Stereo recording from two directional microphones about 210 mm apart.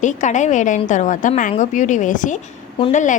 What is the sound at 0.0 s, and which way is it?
A woman's voice, 35° left (ahead or behind).